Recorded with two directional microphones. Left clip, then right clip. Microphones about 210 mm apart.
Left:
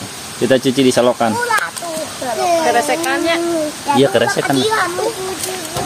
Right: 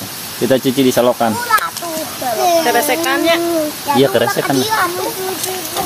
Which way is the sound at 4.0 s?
Centre (ahead or behind).